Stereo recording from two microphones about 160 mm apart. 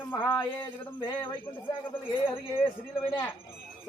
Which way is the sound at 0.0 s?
15° left (ahead or behind).